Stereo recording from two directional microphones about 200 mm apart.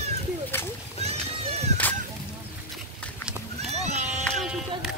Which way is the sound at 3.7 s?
35° right (ahead or behind).